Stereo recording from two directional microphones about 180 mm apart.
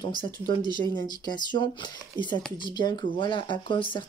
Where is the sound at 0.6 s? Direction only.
25° right (ahead or behind).